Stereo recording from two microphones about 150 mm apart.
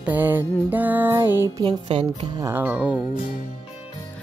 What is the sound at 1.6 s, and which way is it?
Music, 35° right (ahead or behind).